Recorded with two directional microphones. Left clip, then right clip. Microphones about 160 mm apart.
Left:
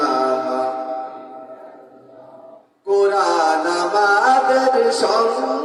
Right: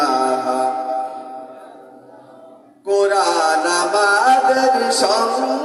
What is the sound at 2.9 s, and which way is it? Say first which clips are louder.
Music: even; 25° right (ahead or behind).